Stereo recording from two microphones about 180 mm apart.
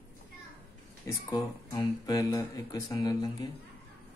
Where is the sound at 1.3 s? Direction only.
25° left (ahead or behind).